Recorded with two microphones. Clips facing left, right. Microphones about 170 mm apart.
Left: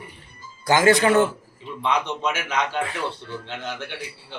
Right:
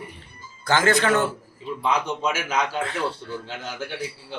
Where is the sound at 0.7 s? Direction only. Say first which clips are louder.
Left 3 dB; 15° left (ahead or behind).